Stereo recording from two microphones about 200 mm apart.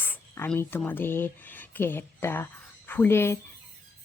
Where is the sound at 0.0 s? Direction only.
10° left (ahead or behind).